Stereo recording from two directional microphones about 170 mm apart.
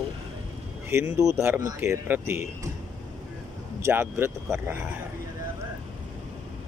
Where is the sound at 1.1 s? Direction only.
15° right (ahead or behind).